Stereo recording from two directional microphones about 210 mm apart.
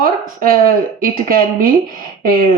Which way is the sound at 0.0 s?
45° right (ahead or behind).